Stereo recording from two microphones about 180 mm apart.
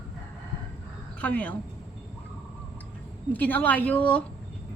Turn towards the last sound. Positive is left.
turn(degrees=10)  # may be behind; listen again after turning